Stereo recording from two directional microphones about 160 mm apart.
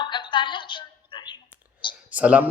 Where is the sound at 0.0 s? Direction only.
30° left (ahead or behind).